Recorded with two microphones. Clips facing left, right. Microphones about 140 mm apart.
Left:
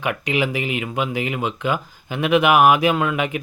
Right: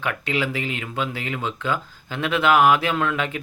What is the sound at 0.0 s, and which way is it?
Speech, 15° left (ahead or behind).